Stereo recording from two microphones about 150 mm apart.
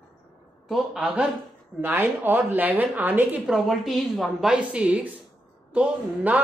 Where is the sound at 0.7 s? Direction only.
5° right (ahead or behind).